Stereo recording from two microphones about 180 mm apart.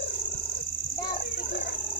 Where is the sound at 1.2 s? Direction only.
50° left (ahead or behind).